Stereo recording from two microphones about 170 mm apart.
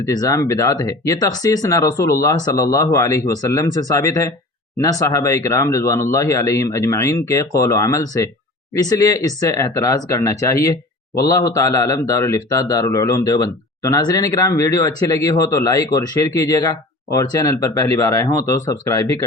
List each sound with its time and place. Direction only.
0.0 s speech: 20° left (ahead or behind)